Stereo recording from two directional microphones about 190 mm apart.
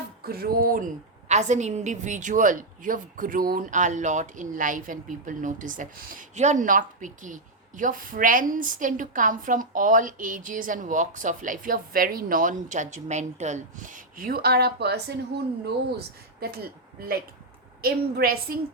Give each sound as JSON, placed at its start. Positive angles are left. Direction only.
{"t": 0.2, "sound": "a woman's voice", "side_deg": -50}
{"t": 1.3, "sound": "a woman's voice", "side_deg": -35}
{"t": 17.8, "sound": "a woman's voice", "side_deg": -55}